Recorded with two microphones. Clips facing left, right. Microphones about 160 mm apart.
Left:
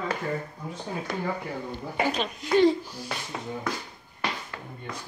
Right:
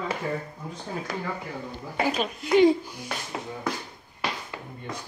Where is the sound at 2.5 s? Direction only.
15° right (ahead or behind).